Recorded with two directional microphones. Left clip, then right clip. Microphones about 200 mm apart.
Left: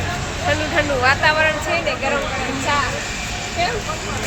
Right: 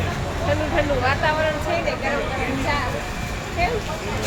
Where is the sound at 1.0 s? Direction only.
15° left (ahead or behind).